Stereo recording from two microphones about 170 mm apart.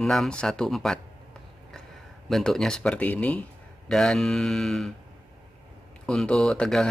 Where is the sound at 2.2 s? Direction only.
Centre (ahead or behind).